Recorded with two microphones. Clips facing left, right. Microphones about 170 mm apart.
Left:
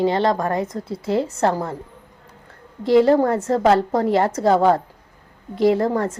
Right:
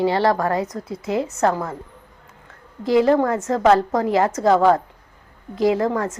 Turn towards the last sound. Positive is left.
turn(degrees=30)  # may be behind; listen again after turning